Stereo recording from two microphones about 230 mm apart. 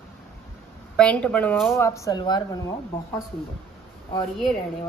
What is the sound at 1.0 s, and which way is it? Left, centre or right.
A woman's voice, centre.